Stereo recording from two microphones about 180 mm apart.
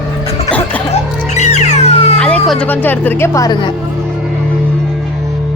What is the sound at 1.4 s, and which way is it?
Cat, 40° left (ahead or behind).